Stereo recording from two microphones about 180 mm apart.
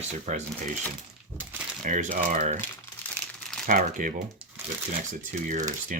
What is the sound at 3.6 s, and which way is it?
Speech, 45° right (ahead or behind).